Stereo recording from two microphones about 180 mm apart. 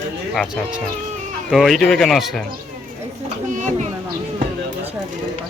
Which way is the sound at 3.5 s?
40° right (ahead or behind).